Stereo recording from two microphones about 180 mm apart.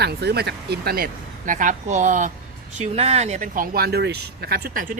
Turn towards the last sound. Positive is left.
turn(degrees=-55)  # may be behind; listen again after turning